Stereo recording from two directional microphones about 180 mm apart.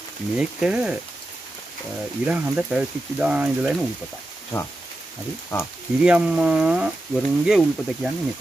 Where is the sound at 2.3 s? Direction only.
10° right (ahead or behind).